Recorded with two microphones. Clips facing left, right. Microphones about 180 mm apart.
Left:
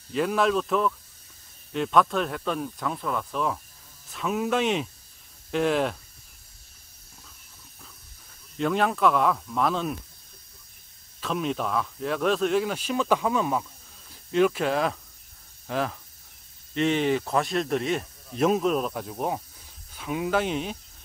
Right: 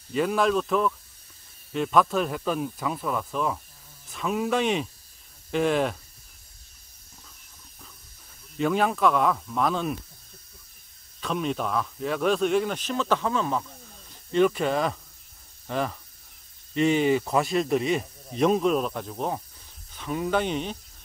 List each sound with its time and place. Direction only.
0.1 s speech: centre (ahead or behind)
8.5 s speech: centre (ahead or behind)
11.1 s speech: centre (ahead or behind)